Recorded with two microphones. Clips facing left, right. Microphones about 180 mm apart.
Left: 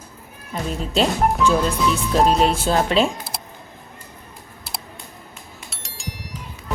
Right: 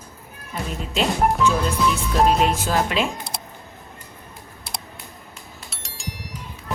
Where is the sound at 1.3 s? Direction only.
Centre (ahead or behind).